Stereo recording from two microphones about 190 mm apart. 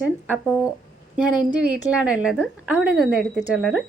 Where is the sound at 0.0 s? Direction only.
5° right (ahead or behind).